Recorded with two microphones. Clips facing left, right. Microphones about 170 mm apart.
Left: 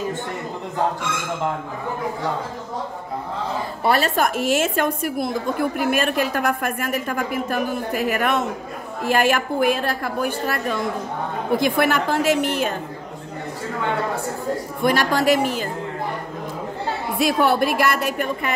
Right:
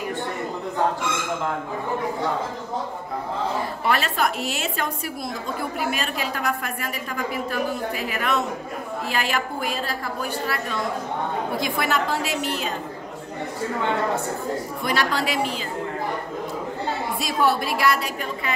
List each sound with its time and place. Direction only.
3.8 s a woman's voice: 40° left (ahead or behind); by 12.7 s 55° left (ahead or behind)
14.8 s a woman's voice: 50° left (ahead or behind)
17.2 s a woman's voice: 60° left (ahead or behind)